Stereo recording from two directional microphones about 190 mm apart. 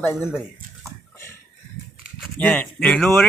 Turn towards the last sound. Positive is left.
turn(degrees=5)  # may be behind; listen again after turning